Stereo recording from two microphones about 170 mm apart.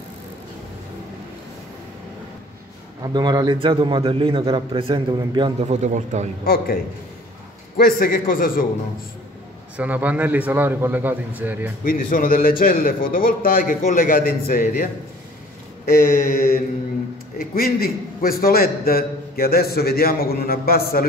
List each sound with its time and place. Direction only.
3.0 s a man's voice: 25° right (ahead or behind)
5.6 s a man's voice: 45° right (ahead or behind)
6.4 s a man's voice: 60° left (ahead or behind)
9.8 s a man's voice: 10° right (ahead or behind)
11.8 s a man's voice: 55° left (ahead or behind)
15.9 s a sound: 55° left (ahead or behind)
17.4 s a man's voice: 60° left (ahead or behind)